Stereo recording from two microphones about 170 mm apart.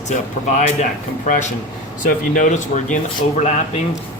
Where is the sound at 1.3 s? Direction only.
45° left (ahead or behind).